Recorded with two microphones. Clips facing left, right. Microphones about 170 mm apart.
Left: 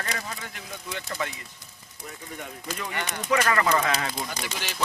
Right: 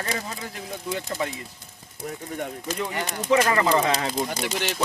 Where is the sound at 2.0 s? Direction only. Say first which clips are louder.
Right 8 dB; 45° right (ahead or behind).